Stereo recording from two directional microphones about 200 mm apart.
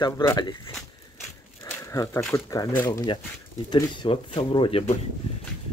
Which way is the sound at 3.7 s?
20° left (ahead or behind).